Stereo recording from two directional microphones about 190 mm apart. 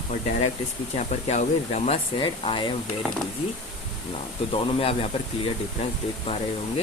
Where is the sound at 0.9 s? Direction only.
40° left (ahead or behind).